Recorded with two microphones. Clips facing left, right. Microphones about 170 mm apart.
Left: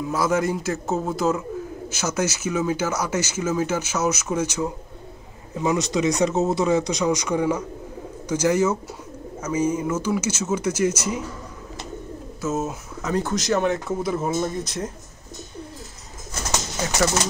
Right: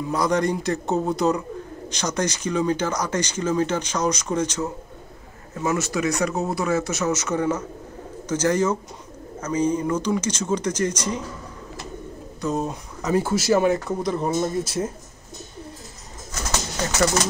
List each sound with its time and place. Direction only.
0.0 s speech: 5° left (ahead or behind)
12.4 s speech: 5° left (ahead or behind)
13.1 s speech: 5° right (ahead or behind)
16.8 s speech: 5° left (ahead or behind)